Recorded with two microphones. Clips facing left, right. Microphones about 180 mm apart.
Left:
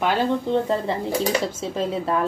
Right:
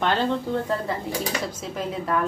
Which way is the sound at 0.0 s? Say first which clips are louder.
Left 2 dB; 10° left (ahead or behind).